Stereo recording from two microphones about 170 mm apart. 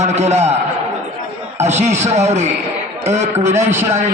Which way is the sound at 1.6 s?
40° right (ahead or behind).